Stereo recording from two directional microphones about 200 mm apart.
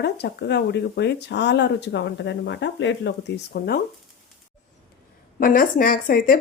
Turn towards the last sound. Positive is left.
turn(degrees=45)  # may be behind; listen again after turning